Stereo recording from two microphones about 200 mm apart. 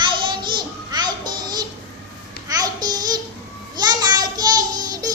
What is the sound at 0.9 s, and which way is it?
Music, 20° right (ahead or behind).